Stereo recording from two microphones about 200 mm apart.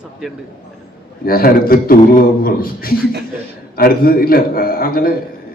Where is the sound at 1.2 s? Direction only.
45° left (ahead or behind).